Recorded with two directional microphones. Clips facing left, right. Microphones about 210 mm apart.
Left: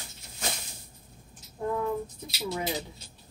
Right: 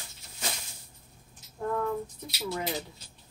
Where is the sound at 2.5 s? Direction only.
20° left (ahead or behind).